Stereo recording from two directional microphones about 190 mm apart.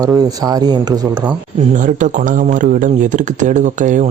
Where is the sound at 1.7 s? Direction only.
40° right (ahead or behind).